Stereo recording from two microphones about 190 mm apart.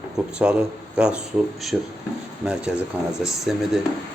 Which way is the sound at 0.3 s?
5° right (ahead or behind).